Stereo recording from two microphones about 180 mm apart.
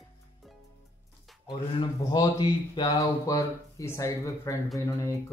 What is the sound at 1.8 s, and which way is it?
Speech, 25° left (ahead or behind).